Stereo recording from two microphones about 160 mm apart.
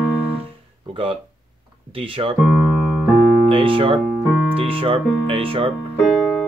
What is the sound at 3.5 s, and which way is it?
Music, 35° right (ahead or behind).